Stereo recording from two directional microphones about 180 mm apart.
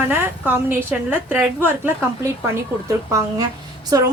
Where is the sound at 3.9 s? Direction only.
20° right (ahead or behind).